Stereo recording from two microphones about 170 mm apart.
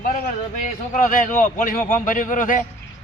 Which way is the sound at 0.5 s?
50° left (ahead or behind).